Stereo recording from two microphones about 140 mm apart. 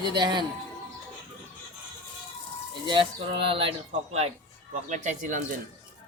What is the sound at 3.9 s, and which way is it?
Speech, 50° right (ahead or behind).